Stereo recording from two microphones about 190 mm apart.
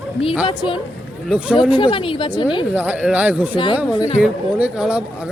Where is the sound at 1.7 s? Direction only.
25° left (ahead or behind).